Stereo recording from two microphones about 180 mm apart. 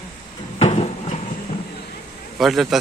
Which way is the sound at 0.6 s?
35° left (ahead or behind).